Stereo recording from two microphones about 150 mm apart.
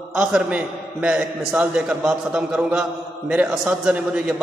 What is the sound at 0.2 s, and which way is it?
A man's voice, 5° right (ahead or behind).